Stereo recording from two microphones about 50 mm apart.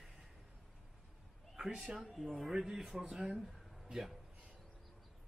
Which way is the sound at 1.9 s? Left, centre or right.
Centre.